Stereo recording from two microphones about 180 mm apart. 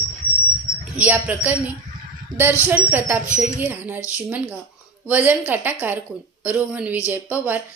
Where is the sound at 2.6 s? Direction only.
10° right (ahead or behind).